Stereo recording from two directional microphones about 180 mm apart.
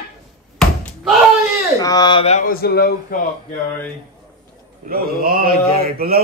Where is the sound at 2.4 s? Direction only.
55° left (ahead or behind).